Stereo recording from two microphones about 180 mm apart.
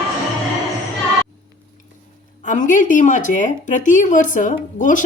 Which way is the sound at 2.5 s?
45° left (ahead or behind).